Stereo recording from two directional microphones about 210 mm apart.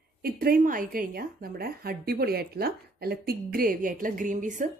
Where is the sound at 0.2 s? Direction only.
45° right (ahead or behind).